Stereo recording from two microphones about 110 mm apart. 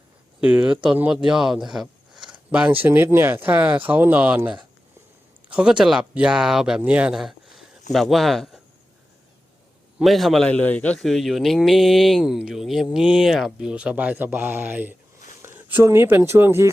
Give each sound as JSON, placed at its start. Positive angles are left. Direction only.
{"t": 0.4, "sound": "speech", "side_deg": -10}
{"t": 2.1, "sound": "a sound", "side_deg": -45}
{"t": 2.5, "sound": "speech", "side_deg": -15}
{"t": 10.0, "sound": "speech", "side_deg": 0}
{"t": 10.5, "sound": "a man's voice", "side_deg": 15}
{"t": 11.0, "sound": "speech", "side_deg": 0}